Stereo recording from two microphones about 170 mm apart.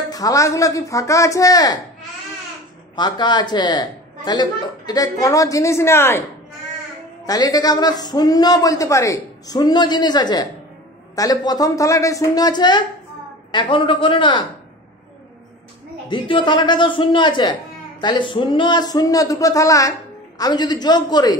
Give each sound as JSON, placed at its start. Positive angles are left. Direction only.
{"t": 0.1, "sound": "speech", "side_deg": 20}
{"t": 3.0, "sound": "speech", "side_deg": 25}
{"t": 7.2, "sound": "speech", "side_deg": 20}
{"t": 16.1, "sound": "speech", "side_deg": 30}